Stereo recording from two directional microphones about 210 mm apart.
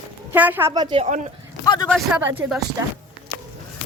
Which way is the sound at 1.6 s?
20° left (ahead or behind).